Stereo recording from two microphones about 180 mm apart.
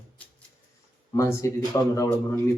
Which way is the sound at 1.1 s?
15° left (ahead or behind).